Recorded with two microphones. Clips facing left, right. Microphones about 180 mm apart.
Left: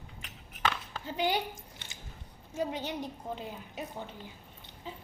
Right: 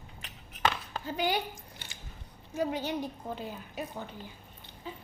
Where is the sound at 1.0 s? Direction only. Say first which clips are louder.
Even; 25° left (ahead or behind).